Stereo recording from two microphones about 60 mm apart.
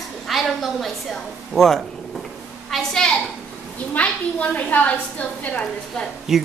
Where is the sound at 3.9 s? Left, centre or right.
Left.